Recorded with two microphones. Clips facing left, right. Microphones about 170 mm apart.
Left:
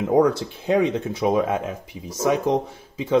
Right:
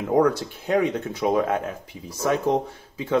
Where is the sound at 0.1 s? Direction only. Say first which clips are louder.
Left 1 dB; 20° left (ahead or behind).